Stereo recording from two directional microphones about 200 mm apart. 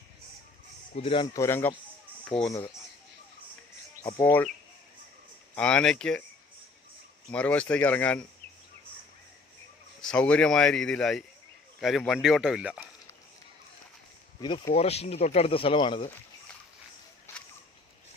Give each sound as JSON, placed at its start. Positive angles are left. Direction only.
{"t": 0.9, "sound": "speech", "side_deg": 25}
{"t": 2.5, "sound": "speech", "side_deg": 15}
{"t": 4.0, "sound": "speech", "side_deg": 10}
{"t": 5.5, "sound": "speech", "side_deg": 5}
{"t": 7.3, "sound": "speech", "side_deg": 5}
{"t": 10.0, "sound": "speech", "side_deg": 5}
{"t": 14.4, "sound": "speech", "side_deg": 25}